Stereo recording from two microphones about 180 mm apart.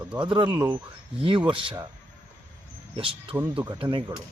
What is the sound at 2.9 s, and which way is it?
Speech, 30° right (ahead or behind).